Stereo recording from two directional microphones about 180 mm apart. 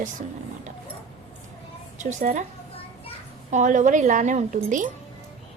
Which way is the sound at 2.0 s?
45° right (ahead or behind).